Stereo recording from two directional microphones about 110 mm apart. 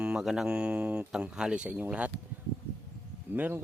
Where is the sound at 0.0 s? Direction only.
5° right (ahead or behind).